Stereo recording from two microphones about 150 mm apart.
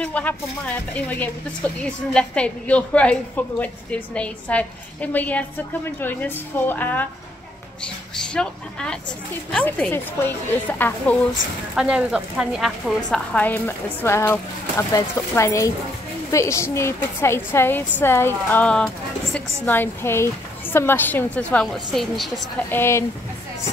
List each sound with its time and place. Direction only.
0.0 s speech: 10° left (ahead or behind)
11.7 s speech: 5° right (ahead or behind)
22.7 s speech: 15° left (ahead or behind)